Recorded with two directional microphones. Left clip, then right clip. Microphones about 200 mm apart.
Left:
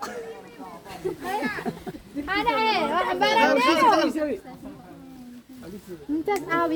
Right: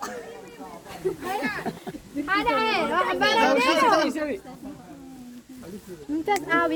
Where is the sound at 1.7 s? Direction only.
45° left (ahead or behind).